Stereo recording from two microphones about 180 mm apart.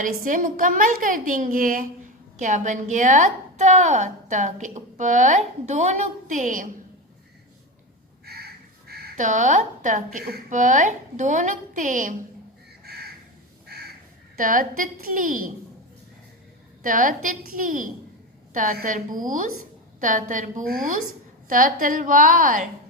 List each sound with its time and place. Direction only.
0.0 s a woman's voice: 45° right (ahead or behind)
8.2 s crow: 60° right (ahead or behind)
8.9 s a woman's voice: 50° right (ahead or behind)
12.8 s crow: 60° right (ahead or behind)
14.3 s a woman's voice: 50° right (ahead or behind)
16.8 s a woman's voice: 50° right (ahead or behind)